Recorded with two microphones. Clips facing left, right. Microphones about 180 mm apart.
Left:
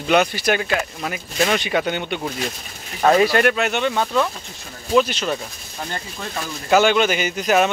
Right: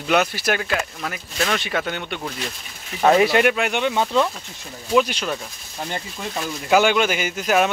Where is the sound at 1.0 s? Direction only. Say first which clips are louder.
Left 4 dB; 10° left (ahead or behind).